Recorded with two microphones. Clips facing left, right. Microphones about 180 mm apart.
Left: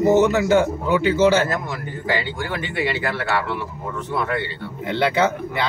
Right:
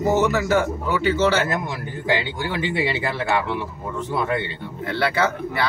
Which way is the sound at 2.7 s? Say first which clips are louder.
Even; 25° right (ahead or behind).